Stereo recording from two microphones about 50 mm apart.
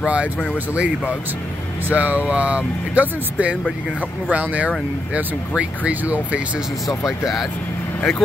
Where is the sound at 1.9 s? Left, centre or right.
Right.